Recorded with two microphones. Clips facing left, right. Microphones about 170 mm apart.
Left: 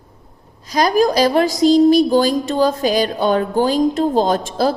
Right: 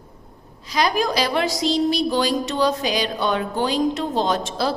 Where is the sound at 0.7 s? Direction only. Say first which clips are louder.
Left 6 dB; 45° left (ahead or behind).